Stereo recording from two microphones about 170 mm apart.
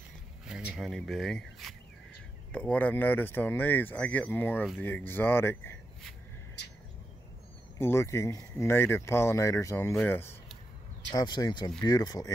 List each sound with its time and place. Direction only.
0.5 s speech: 5° right (ahead or behind); by 5.6 s 15° left (ahead or behind)
7.8 s speech: 15° left (ahead or behind)
11.1 s speech: 25° left (ahead or behind)